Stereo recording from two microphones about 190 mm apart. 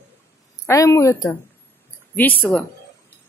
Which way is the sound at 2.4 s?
5° left (ahead or behind).